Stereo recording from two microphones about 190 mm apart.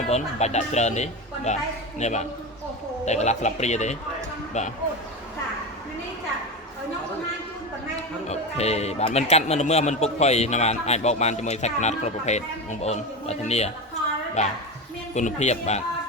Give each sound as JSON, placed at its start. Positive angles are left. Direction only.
{"t": 0.1, "sound": "speech", "side_deg": 35}
{"t": 8.3, "sound": "speech", "side_deg": 35}